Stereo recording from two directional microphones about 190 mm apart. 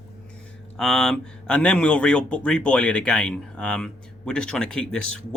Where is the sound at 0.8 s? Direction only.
5° left (ahead or behind).